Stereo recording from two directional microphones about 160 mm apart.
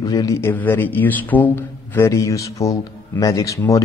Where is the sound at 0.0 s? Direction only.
20° left (ahead or behind).